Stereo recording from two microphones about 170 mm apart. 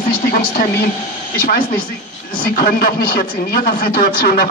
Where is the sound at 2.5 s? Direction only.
60° left (ahead or behind).